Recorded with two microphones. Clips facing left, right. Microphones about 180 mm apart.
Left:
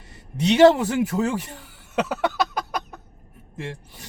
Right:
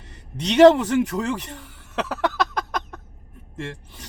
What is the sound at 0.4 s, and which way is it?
Speech, 5° left (ahead or behind).